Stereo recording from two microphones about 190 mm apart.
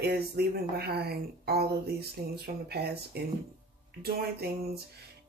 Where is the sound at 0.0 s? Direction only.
60° right (ahead or behind).